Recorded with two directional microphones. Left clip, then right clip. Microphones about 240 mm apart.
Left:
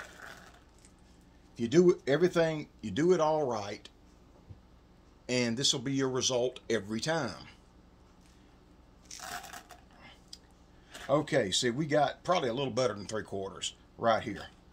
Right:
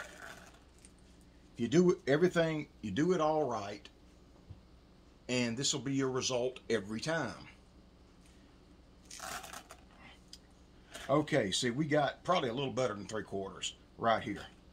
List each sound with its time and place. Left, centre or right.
1.6 s speech: left
5.2 s speech: left
9.1 s a sound: centre
11.1 s speech: left